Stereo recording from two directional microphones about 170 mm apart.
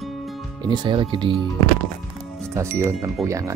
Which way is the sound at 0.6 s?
25° right (ahead or behind).